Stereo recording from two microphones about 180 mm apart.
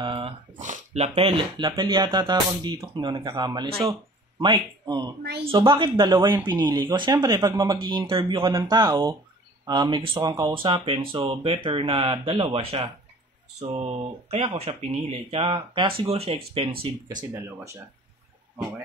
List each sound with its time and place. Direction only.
0.0 s a sound: 30° right (ahead or behind)
0.6 s speech: 40° right (ahead or behind)
17.3 s speech: 15° right (ahead or behind)